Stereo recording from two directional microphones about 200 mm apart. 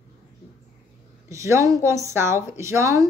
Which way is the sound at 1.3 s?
15° right (ahead or behind).